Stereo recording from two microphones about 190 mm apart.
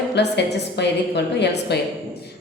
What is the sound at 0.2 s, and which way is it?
A woman's voice, 65° left (ahead or behind).